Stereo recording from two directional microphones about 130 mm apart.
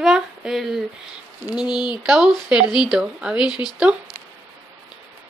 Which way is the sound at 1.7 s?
35° left (ahead or behind).